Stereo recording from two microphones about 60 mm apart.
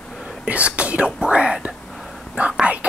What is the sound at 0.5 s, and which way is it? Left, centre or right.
Whispering, right.